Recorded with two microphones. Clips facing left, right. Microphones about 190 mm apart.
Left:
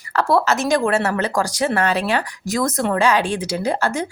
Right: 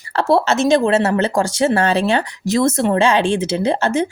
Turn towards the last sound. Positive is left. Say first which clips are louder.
# right 4 dB
turn(degrees=-25)  # may be behind; listen again after turning